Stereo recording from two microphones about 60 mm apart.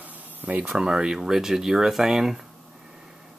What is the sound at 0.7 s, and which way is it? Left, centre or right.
Speech, centre.